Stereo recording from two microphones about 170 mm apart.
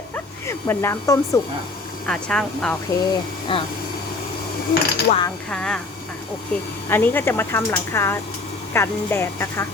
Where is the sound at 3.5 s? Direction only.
30° left (ahead or behind).